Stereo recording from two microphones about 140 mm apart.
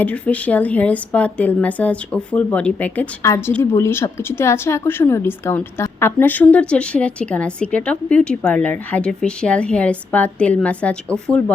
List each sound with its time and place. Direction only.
0.0 s a woman's voice: 10° left (ahead or behind)